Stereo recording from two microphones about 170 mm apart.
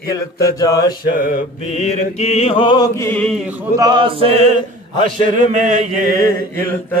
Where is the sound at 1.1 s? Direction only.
55° left (ahead or behind).